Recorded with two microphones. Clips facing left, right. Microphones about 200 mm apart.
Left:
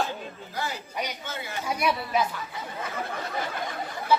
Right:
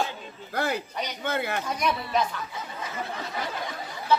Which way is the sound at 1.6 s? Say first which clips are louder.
Left 1 dB; 10° left (ahead or behind).